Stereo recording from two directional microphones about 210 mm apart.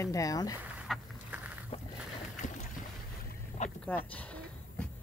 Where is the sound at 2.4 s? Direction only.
35° left (ahead or behind).